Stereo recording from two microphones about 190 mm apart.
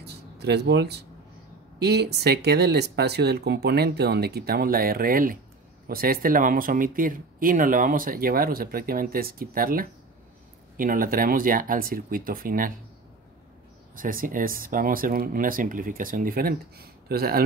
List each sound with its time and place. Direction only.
0.0 s a sound: 60° right (ahead or behind)
1.8 s speech: 60° right (ahead or behind)
13.9 s speech: 45° right (ahead or behind)